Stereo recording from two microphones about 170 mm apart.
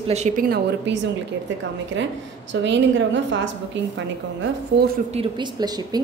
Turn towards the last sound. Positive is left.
turn(degrees=-25)  # may be behind; listen again after turning